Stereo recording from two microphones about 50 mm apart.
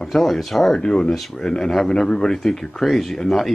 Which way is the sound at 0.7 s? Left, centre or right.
Centre.